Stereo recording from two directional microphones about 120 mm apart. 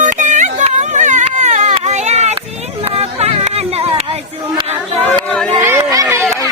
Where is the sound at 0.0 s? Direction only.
90° right; by 4.0 s 55° right (ahead or behind).